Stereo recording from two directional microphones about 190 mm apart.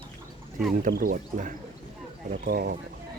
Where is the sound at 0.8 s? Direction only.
50° right (ahead or behind).